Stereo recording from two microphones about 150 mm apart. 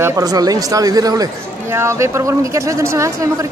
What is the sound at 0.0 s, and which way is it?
A man's voice, 25° right (ahead or behind).